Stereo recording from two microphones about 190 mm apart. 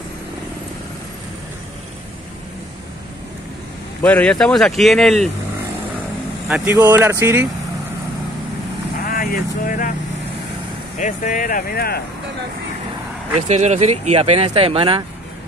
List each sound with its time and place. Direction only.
4.0 s speech: 5° left (ahead or behind)
6.5 s speech: 10° right (ahead or behind)
9.1 s speech: 50° left (ahead or behind)
11.0 s speech: 40° left (ahead or behind)
13.5 s speech: 35° right (ahead or behind)